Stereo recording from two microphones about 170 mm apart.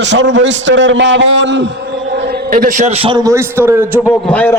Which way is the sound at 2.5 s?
45° right (ahead or behind).